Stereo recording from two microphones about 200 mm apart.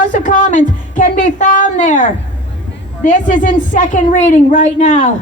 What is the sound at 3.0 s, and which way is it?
A woman's voice, 40° left (ahead or behind).